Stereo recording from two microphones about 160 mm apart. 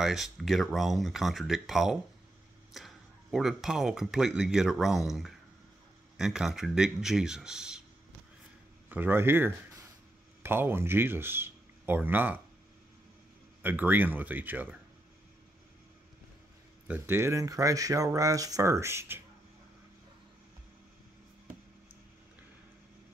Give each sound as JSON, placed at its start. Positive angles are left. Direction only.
{"t": 0.0, "sound": "speech", "side_deg": 0}
{"t": 8.8, "sound": "speech", "side_deg": -10}
{"t": 13.6, "sound": "speech", "side_deg": -10}
{"t": 16.8, "sound": "speech", "side_deg": -10}